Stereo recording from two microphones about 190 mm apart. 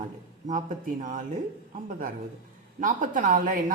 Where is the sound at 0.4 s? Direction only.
40° right (ahead or behind).